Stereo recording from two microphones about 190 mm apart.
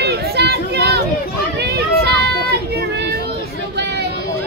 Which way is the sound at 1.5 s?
60° right (ahead or behind).